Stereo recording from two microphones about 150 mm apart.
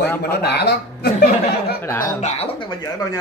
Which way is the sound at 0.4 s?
90° left.